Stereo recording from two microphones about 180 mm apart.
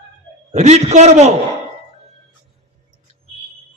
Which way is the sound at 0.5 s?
40° right (ahead or behind).